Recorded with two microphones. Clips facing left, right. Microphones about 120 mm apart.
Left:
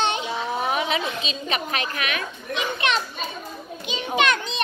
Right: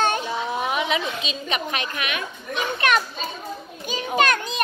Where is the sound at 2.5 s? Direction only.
45° right (ahead or behind).